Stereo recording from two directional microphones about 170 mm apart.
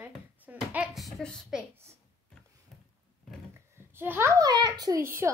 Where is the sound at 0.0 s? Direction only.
10° right (ahead or behind).